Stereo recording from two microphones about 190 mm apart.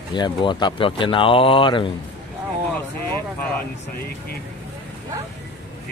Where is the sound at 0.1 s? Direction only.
25° left (ahead or behind).